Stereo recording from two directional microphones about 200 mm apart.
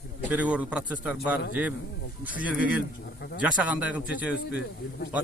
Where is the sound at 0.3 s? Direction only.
5° right (ahead or behind).